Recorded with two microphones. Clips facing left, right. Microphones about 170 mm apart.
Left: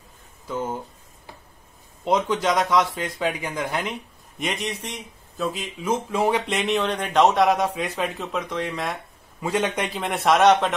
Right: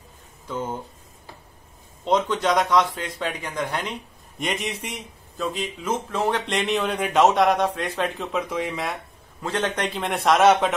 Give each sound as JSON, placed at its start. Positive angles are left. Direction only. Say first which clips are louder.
{"t": 0.5, "sound": "speech", "louder": "left 1 dB", "side_deg": 5}
{"t": 2.0, "sound": "speech", "louder": "even", "side_deg": 10}
{"t": 9.4, "sound": "speech", "louder": "left 1 dB", "side_deg": 10}